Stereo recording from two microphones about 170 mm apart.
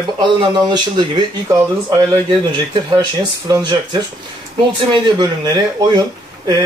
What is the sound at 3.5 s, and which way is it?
Speech, 20° right (ahead or behind).